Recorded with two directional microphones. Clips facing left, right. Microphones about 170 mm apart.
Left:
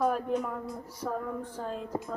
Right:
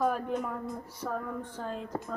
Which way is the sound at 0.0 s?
Centre (ahead or behind).